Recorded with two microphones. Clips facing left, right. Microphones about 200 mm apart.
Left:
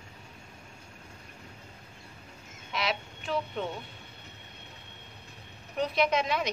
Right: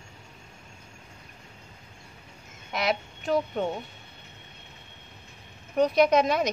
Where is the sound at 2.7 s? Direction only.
45° right (ahead or behind).